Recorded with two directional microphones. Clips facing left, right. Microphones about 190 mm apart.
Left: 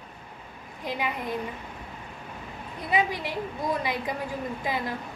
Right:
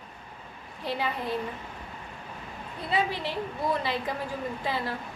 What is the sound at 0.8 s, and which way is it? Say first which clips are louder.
Speech: even; 15° left (ahead or behind).